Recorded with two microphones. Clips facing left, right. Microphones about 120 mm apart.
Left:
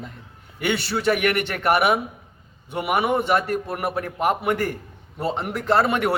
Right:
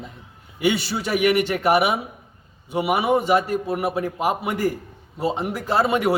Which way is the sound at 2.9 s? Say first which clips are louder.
Right 1 dB; 55° left (ahead or behind).